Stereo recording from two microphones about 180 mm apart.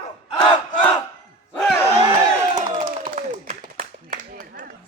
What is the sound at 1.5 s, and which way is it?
Battle cry, 5° left (ahead or behind).